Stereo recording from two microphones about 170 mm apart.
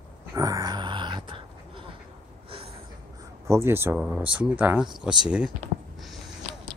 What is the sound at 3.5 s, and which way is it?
Speech, 15° right (ahead or behind).